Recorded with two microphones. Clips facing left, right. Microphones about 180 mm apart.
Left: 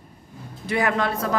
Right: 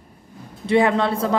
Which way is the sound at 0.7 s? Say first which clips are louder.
Right 5 dB; 25° right (ahead or behind).